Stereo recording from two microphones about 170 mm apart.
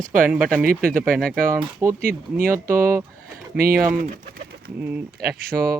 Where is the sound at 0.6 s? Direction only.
60° right (ahead or behind).